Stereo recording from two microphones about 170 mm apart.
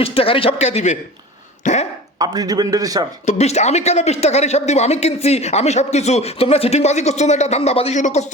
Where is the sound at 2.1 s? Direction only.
20° right (ahead or behind).